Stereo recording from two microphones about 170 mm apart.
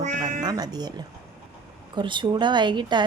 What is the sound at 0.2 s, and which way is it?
Meow, 45° right (ahead or behind).